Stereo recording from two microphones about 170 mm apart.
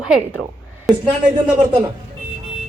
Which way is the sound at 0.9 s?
Centre (ahead or behind).